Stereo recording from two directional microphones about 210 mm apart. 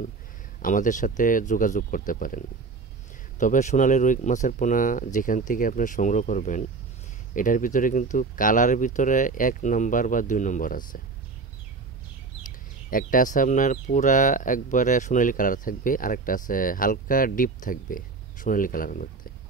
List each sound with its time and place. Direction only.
0.6 s speech: 40° left (ahead or behind)
12.9 s speech: 40° left (ahead or behind)